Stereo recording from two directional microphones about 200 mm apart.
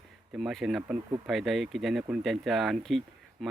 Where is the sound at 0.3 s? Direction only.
Centre (ahead or behind).